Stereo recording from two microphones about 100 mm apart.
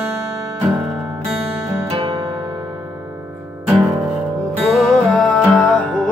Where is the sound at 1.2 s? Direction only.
30° right (ahead or behind).